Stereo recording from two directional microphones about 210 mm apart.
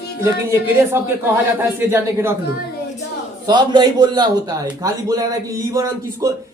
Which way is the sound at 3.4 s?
20° right (ahead or behind).